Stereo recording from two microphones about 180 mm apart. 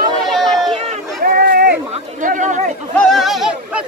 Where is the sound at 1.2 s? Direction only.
55° right (ahead or behind).